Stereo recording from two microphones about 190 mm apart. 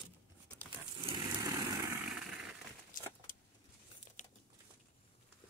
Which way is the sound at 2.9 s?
45° left (ahead or behind).